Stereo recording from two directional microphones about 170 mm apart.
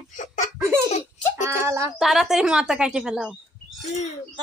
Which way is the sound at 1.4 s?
15° right (ahead or behind).